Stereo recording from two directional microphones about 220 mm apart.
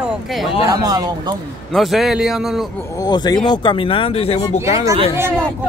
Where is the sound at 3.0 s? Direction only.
20° left (ahead or behind).